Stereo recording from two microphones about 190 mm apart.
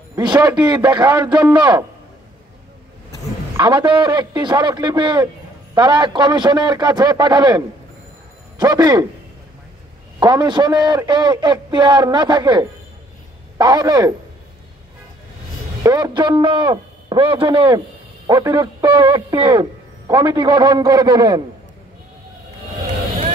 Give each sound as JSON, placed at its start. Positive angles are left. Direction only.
{"t": 0.1, "sound": "a man's voice", "side_deg": -20}
{"t": 3.5, "sound": "a man's voice", "side_deg": -20}
{"t": 10.2, "sound": "a man's voice", "side_deg": -25}
{"t": 15.8, "sound": "a man's voice", "side_deg": -20}